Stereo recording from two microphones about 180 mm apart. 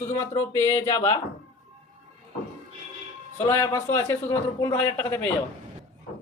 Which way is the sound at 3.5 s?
15° left (ahead or behind).